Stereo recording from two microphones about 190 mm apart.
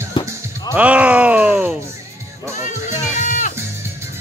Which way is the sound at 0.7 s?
5° right (ahead or behind).